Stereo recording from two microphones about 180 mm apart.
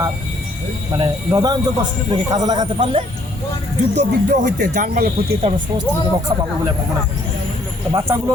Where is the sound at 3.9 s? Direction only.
70° right (ahead or behind).